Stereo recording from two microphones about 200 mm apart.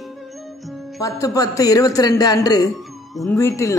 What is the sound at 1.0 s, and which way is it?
Speech, 15° left (ahead or behind).